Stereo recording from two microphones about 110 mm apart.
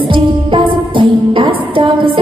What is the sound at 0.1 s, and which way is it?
Music, 50° right (ahead or behind).